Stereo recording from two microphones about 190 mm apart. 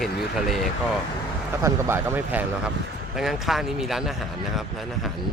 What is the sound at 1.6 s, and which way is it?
Speech, 10° right (ahead or behind).